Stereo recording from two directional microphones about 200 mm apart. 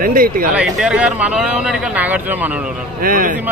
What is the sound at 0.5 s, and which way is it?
Speech, centre (ahead or behind).